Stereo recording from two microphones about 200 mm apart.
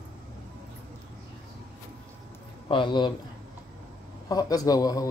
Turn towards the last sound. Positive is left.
turn(degrees=20)  # may be behind; listen again after turning